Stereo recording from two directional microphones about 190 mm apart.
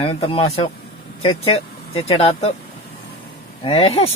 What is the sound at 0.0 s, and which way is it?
Speech, 30° left (ahead or behind).